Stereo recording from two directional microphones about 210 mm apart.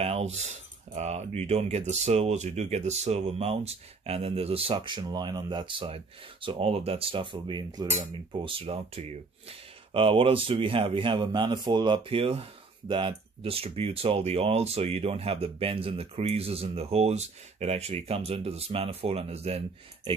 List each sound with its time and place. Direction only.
0.0 s speech: 30° right (ahead or behind)